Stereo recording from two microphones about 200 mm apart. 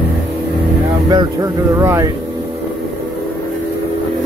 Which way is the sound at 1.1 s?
20° right (ahead or behind).